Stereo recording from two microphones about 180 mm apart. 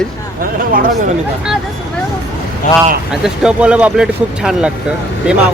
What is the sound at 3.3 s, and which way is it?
Speech, 5° right (ahead or behind).